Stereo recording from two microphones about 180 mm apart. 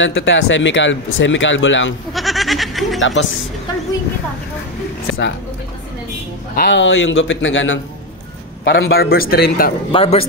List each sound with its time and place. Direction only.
0.0 s speech: 90° left
2.1 s speech: centre (ahead or behind)
3.0 s speech: 90° left
5.0 s a sound: 90° left
6.5 s speech: 70° left (ahead or behind); by 7.8 s 90° left
8.6 s a man's voice: 65° left (ahead or behind)
9.9 s a man's voice: 35° left (ahead or behind)